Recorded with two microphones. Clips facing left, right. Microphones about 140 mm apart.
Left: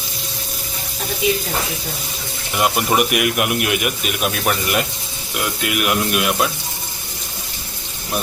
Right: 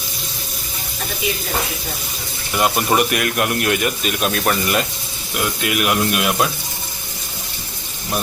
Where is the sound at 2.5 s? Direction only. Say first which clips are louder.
Even; 15° left (ahead or behind).